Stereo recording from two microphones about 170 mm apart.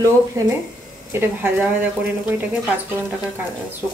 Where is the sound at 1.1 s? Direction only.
10° right (ahead or behind).